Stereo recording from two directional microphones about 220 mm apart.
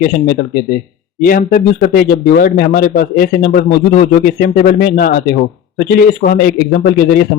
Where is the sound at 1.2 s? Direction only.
40° left (ahead or behind).